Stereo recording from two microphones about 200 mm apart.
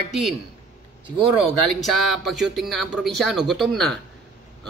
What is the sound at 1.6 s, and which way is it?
Speech, centre (ahead or behind).